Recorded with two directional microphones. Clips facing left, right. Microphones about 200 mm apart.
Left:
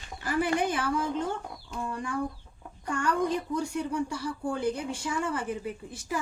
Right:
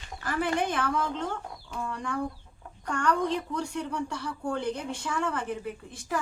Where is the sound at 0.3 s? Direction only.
10° left (ahead or behind).